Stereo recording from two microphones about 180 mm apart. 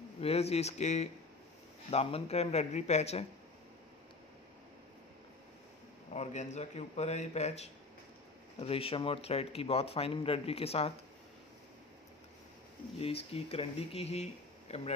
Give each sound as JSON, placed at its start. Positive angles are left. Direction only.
{"t": 0.2, "sound": "a man's voice", "side_deg": 35}
{"t": 6.1, "sound": "a man's voice", "side_deg": 40}
{"t": 13.0, "sound": "a man's voice", "side_deg": 35}